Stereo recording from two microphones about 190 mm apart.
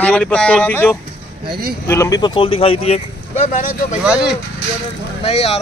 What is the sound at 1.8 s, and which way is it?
Speech, 15° left (ahead or behind).